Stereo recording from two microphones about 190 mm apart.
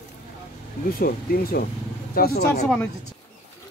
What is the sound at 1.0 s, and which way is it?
Speech, 50° left (ahead or behind).